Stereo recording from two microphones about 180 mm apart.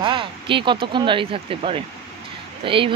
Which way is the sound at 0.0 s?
30° right (ahead or behind).